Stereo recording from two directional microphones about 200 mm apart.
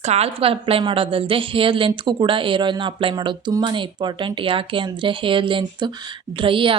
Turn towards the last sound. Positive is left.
turn(degrees=-25)  # may be behind; listen again after turning